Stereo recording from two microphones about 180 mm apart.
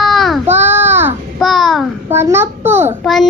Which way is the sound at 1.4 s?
Centre (ahead or behind).